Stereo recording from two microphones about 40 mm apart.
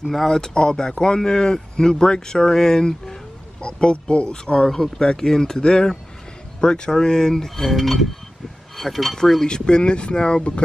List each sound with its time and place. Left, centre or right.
0.0 s speech: centre
0.3 s speech: centre